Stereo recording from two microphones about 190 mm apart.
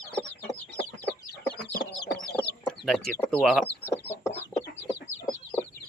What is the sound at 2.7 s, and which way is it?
Speech, 5° left (ahead or behind).